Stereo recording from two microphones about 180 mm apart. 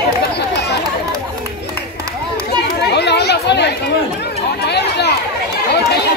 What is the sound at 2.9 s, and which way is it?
Chatter, 65° left (ahead or behind).